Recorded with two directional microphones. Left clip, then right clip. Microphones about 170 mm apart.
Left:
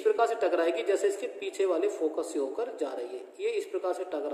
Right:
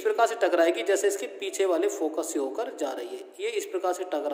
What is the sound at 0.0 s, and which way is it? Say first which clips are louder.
A woman's voice: right 2 dB; 50° right (ahead or behind).